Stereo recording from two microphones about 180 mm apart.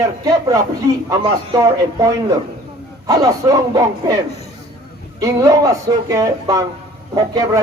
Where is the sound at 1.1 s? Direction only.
20° right (ahead or behind).